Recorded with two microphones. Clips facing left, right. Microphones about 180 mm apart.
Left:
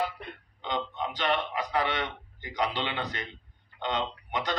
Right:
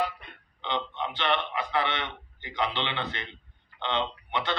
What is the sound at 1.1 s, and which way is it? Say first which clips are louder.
A man's voice: even; 40° left (ahead or behind).